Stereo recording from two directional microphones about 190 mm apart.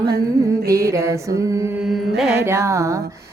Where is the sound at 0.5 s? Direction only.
55° right (ahead or behind).